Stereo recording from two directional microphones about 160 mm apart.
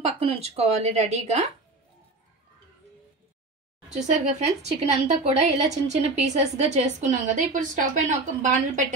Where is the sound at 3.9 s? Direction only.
50° right (ahead or behind).